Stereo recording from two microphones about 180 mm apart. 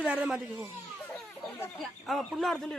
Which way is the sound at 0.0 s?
5° right (ahead or behind).